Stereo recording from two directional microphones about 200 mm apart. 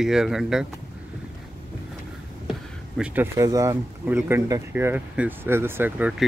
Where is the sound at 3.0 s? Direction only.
15° right (ahead or behind).